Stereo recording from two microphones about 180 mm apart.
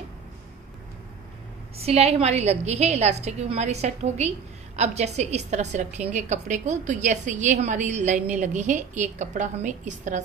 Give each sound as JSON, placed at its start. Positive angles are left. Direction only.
{"t": 1.8, "sound": "a woman's voice", "side_deg": -35}